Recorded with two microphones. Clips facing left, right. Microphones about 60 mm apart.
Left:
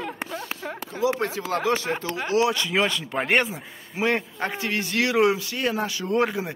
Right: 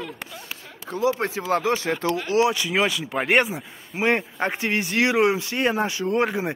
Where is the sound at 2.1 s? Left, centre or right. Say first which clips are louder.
Right 4 dB; left.